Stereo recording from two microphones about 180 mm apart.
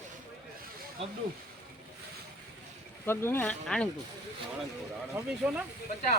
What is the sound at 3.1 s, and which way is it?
Speech, 10° left (ahead or behind).